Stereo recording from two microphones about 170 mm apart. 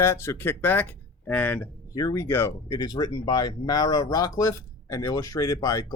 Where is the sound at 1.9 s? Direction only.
20° left (ahead or behind).